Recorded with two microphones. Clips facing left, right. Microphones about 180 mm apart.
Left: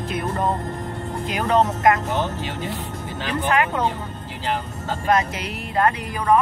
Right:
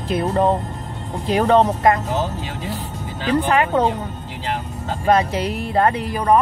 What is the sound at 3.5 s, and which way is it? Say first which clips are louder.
Speech: right 1 dB; 35° right (ahead or behind).